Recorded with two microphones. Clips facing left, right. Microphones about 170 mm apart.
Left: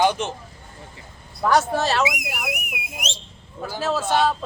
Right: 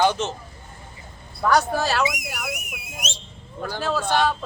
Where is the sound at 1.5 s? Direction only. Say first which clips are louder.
Left 1 dB; centre (ahead or behind).